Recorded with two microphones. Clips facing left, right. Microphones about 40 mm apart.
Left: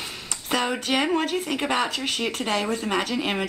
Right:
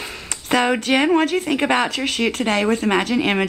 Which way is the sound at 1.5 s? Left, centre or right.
Right.